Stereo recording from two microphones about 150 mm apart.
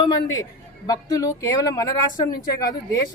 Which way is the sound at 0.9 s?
25° left (ahead or behind).